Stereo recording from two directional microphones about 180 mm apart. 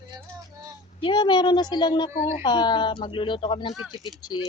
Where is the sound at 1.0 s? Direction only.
25° left (ahead or behind).